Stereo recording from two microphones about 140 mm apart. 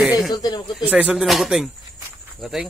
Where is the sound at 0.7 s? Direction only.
10° right (ahead or behind).